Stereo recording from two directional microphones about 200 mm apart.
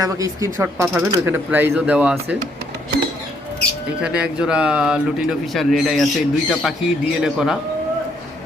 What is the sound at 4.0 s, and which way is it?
Speech, 5° right (ahead or behind).